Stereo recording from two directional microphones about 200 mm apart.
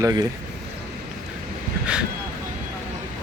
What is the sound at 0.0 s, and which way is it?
Speech, 20° right (ahead or behind).